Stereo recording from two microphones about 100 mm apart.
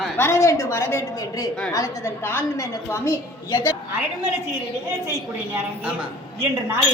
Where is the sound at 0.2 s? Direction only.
25° left (ahead or behind).